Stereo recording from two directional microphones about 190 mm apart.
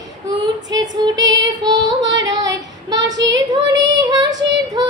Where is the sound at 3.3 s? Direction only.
70° right (ahead or behind).